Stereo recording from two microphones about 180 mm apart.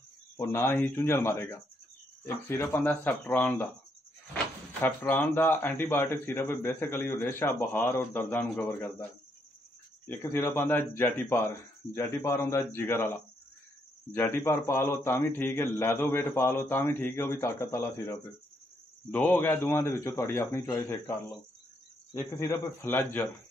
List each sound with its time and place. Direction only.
0.4 s a man's voice: 15° left (ahead or behind)
4.8 s a man's voice: 10° left (ahead or behind)
10.2 s a man's voice: 15° left (ahead or behind)